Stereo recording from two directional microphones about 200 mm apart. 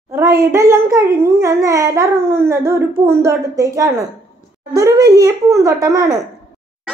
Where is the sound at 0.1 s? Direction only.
15° right (ahead or behind).